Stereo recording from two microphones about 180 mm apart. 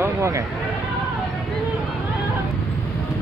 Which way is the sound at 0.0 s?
15° right (ahead or behind).